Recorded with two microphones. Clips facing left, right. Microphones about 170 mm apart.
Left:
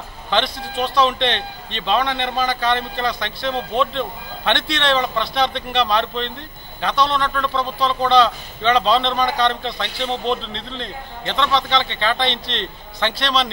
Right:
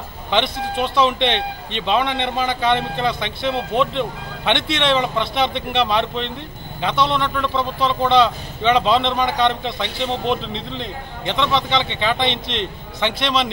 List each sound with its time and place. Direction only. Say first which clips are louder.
0.3 s a man's voice: right 1 dB; 20° right (ahead or behind)